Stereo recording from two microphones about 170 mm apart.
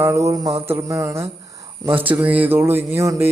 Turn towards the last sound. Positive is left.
turn(degrees=-15)  # may be behind; listen again after turning